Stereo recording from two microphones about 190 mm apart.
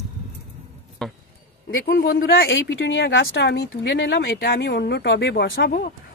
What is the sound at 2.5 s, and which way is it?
Speech, 70° left (ahead or behind).